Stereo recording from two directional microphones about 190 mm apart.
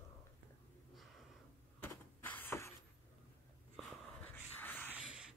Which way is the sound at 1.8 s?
10° left (ahead or behind).